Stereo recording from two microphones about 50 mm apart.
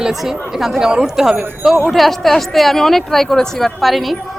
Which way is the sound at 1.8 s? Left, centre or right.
Centre.